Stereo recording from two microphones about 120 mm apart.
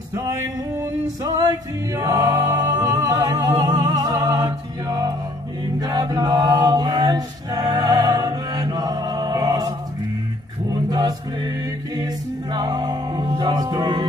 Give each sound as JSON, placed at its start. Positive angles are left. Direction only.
{"t": 0.1, "sound": "male singing", "side_deg": -25}
{"t": 2.0, "sound": "singing", "side_deg": -30}
{"t": 5.8, "sound": "chant", "side_deg": -35}
{"t": 10.9, "sound": "a capella", "side_deg": -30}